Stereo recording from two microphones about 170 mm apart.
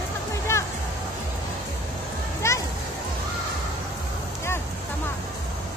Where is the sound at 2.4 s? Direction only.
15° left (ahead or behind).